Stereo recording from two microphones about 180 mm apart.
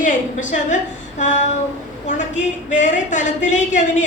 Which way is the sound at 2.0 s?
45° left (ahead or behind).